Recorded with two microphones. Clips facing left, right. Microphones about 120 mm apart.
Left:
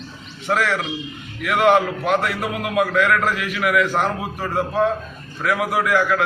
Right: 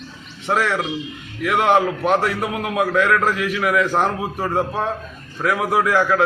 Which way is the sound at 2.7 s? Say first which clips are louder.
Even; 20° right (ahead or behind).